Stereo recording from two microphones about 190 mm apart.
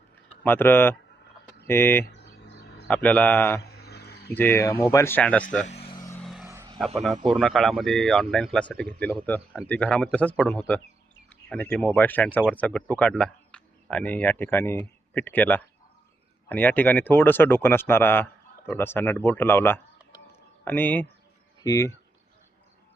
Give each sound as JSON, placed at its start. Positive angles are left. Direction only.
{"t": 0.4, "sound": "speech", "side_deg": 10}
{"t": 2.1, "sound": "a sound", "side_deg": 65}
{"t": 2.8, "sound": "speech", "side_deg": 5}
{"t": 3.6, "sound": "a sound", "side_deg": 55}
{"t": 4.4, "sound": "speech", "side_deg": 10}
{"t": 5.6, "sound": "vehicle", "side_deg": 30}
{"t": 6.0, "sound": "vehicle", "side_deg": 15}
{"t": 6.2, "sound": "vehicle", "side_deg": 0}
{"t": 6.5, "sound": "vehicle", "side_deg": -15}
{"t": 6.7, "sound": "a man's voice", "side_deg": 0}